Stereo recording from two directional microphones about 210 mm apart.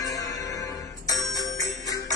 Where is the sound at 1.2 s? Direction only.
Centre (ahead or behind).